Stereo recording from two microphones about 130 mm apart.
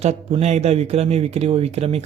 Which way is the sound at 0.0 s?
55° right (ahead or behind).